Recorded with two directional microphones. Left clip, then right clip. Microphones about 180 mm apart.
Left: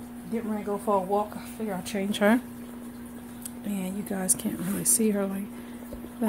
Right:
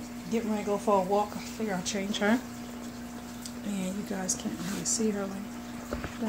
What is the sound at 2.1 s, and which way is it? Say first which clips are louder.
Speech: left 5 dB; 55° left (ahead or behind).